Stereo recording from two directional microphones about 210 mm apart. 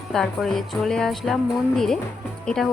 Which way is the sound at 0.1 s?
Centre (ahead or behind).